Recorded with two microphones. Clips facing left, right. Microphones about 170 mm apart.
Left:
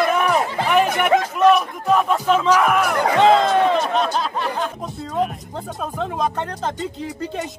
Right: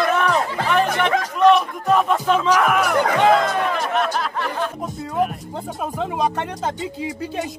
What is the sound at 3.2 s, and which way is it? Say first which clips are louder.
Music: left 3 dB; 25° left (ahead or behind).